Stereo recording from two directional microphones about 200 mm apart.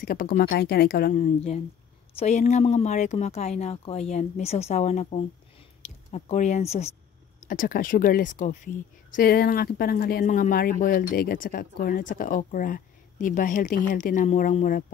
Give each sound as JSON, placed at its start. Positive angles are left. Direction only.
{"t": 0.0, "sound": "speech", "side_deg": 45}
{"t": 1.1, "sound": "speech", "side_deg": 35}
{"t": 7.4, "sound": "speech", "side_deg": 45}